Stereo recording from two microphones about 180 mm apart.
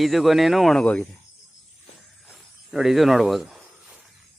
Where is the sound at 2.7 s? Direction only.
Centre (ahead or behind).